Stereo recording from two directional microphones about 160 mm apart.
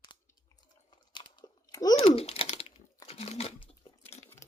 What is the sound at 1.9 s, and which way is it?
Typing, 35° left (ahead or behind).